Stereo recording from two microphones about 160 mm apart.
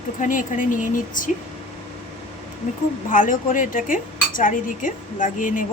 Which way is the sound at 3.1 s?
55° left (ahead or behind).